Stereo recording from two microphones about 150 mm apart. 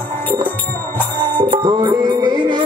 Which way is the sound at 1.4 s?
30° right (ahead or behind).